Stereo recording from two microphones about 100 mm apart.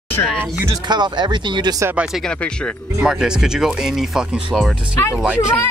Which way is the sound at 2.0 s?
5° right (ahead or behind).